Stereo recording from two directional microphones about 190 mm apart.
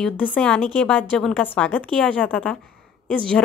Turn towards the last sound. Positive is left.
turn(degrees=5)  # may be behind; listen again after turning